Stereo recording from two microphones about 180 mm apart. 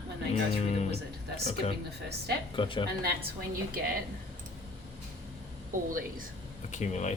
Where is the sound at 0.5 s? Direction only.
40° left (ahead or behind).